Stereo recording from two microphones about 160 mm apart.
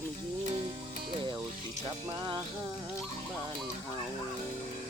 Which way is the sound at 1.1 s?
30° right (ahead or behind).